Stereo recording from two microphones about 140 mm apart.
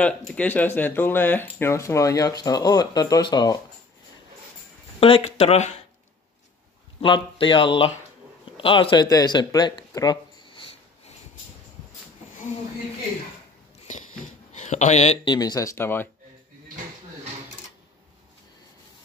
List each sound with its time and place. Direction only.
0.0 s speech: 10° left (ahead or behind); by 3.5 s 30° left (ahead or behind)
5.0 s speech: 45° left (ahead or behind)
7.0 s speech: 40° left (ahead or behind)
14.5 s speech: 55° left (ahead or behind)
15.2 s speech: 30° left (ahead or behind)